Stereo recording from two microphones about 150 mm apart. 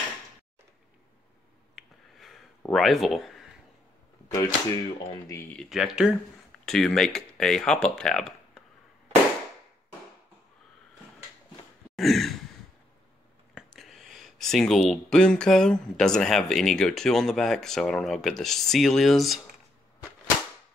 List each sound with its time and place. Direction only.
1.8 s a sound: centre (ahead or behind)
2.7 s speech: centre (ahead or behind)
4.3 s speech: 20° left (ahead or behind)
5.5 s speech: centre (ahead or behind)
11.9 s sigh: centre (ahead or behind)
13.6 s speech: centre (ahead or behind)